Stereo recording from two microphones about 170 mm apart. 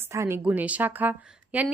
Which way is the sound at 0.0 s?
15° right (ahead or behind).